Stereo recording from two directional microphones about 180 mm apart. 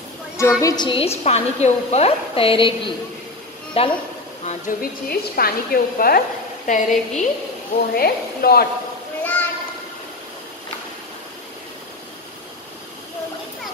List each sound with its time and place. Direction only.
0.4 s a woman's voice: 15° left (ahead or behind); by 3.9 s 35° left (ahead or behind)
4.5 s a woman's voice: 50° left (ahead or behind)
6.7 s a woman's voice: 45° left (ahead or behind)
7.9 s a woman's voice: 55° left (ahead or behind)
9.2 s a sound: 10° left (ahead or behind)